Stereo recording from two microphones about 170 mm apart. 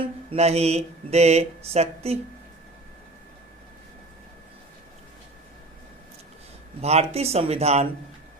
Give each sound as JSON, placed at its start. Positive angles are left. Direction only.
{"t": 0.3, "sound": "speech", "side_deg": -40}
{"t": 6.8, "sound": "speech", "side_deg": -40}